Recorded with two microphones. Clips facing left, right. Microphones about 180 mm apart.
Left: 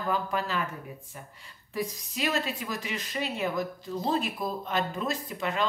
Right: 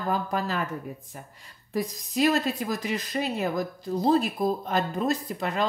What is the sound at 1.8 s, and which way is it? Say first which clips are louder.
Speech: right 6 dB; 40° right (ahead or behind).